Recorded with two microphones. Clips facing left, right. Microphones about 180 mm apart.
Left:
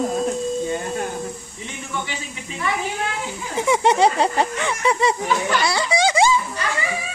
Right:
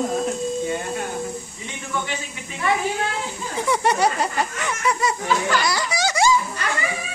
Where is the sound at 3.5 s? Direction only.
20° left (ahead or behind).